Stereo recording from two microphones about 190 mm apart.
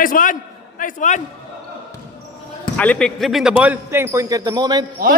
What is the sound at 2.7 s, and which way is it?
A man's voice, 5° left (ahead or behind).